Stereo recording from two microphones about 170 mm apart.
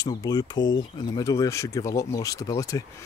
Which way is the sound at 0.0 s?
25° left (ahead or behind).